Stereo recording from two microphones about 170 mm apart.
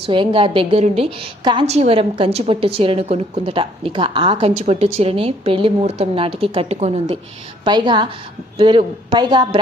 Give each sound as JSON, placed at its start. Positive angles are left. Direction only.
{"t": 0.0, "sound": "a woman's voice", "side_deg": -30}
{"t": 7.6, "sound": "speech", "side_deg": -25}